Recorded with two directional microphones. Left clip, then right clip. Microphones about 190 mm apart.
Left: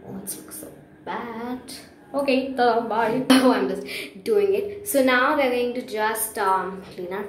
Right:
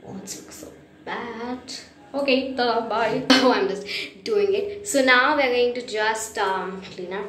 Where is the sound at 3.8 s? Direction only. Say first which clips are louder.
Right 2 dB; 20° left (ahead or behind).